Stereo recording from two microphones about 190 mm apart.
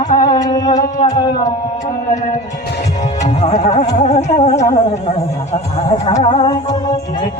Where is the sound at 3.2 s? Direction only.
35° left (ahead or behind).